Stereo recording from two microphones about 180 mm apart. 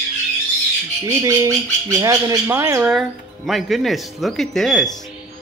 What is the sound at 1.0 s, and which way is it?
Speech, 15° right (ahead or behind).